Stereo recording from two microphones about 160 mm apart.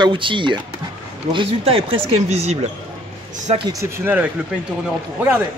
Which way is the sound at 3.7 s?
20° right (ahead or behind).